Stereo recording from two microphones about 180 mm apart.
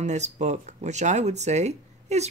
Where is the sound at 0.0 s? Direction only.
40° right (ahead or behind).